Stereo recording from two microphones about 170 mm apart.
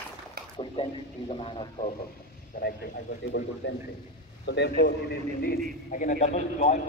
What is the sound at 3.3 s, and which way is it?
Speech, 90° left.